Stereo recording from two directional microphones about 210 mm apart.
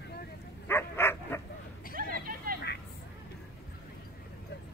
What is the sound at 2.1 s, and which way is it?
Hubbub, 45° right (ahead or behind).